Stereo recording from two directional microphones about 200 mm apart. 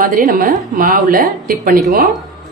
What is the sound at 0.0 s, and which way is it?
A woman's voice, 45° right (ahead or behind).